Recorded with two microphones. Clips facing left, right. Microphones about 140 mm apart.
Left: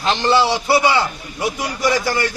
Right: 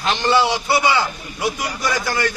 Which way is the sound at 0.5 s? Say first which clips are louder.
Left 2 dB; 30° left (ahead or behind).